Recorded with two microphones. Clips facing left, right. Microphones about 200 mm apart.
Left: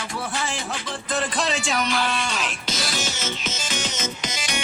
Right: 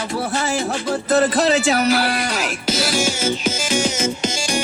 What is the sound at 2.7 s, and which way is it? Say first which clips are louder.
Music: right 10 dB; 30° right (ahead or behind).